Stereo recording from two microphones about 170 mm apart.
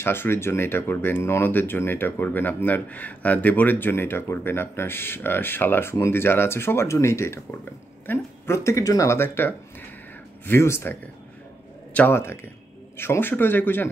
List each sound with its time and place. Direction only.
0.0 s speech: 15° left (ahead or behind)